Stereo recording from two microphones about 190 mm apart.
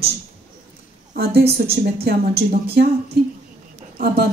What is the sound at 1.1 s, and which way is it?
A woman's voice, 55° right (ahead or behind).